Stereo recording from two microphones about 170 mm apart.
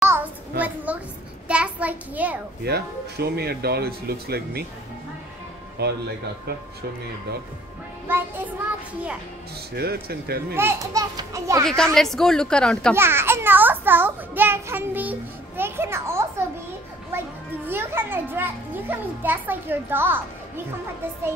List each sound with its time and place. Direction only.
0.0 s a sound: 10° right (ahead or behind)
2.6 s speech: 70° right (ahead or behind)
5.8 s speech: 70° right (ahead or behind)
9.8 s speech: 65° right (ahead or behind)
10.5 s a child's voice: 15° right (ahead or behind)
11.6 s speech: 5° left (ahead or behind)
12.9 s a child's voice: 15° right (ahead or behind)